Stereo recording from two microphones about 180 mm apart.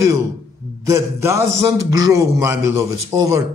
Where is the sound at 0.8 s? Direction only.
15° right (ahead or behind).